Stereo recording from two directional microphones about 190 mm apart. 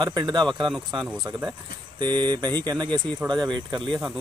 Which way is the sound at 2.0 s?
25° right (ahead or behind).